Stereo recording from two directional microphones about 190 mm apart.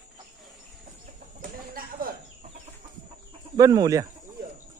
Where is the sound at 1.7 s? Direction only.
50° right (ahead or behind).